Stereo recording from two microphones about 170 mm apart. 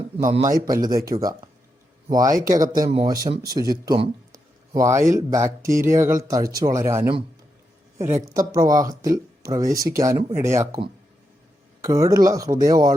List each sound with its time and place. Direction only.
0.2 s a man's voice: 45° right (ahead or behind)
0.5 s speech: 20° right (ahead or behind)
2.5 s speech: 20° right (ahead or behind)
4.3 s speech: 20° right (ahead or behind)
11.8 s speech: 20° right (ahead or behind)